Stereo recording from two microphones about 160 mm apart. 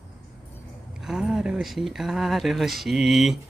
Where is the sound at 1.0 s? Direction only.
5° right (ahead or behind).